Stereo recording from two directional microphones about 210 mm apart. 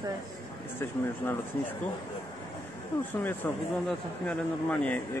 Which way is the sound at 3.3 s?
10° left (ahead or behind).